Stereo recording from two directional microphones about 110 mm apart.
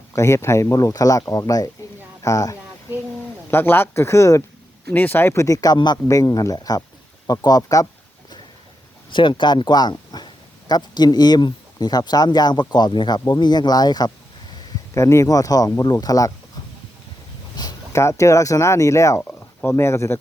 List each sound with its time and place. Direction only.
0.1 s speech: 25° left (ahead or behind)
3.5 s speech: 20° left (ahead or behind)
4.9 s speech: 15° left (ahead or behind); by 7.9 s 35° left (ahead or behind)
9.0 s speech: 45° left (ahead or behind)
14.9 s speech: 25° left (ahead or behind)
17.6 s speech: 30° left (ahead or behind)